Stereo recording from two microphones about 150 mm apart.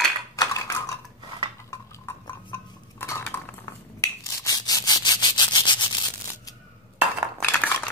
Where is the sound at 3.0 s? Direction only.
15° left (ahead or behind).